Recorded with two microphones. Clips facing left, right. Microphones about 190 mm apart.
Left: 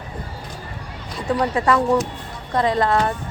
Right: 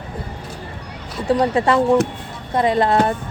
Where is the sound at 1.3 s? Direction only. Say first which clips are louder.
Right 3 dB; 25° right (ahead or behind).